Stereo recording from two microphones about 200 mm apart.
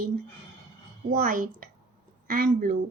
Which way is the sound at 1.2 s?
45° right (ahead or behind).